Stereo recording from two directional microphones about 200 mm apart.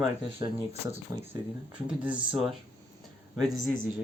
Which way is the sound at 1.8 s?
5° right (ahead or behind).